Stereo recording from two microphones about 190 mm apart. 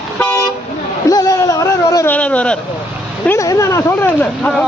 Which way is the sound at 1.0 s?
20° left (ahead or behind).